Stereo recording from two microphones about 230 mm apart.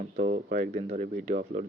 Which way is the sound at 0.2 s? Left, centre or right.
Right.